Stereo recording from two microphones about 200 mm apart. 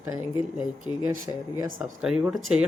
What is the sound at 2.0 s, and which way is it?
Speech, 5° right (ahead or behind).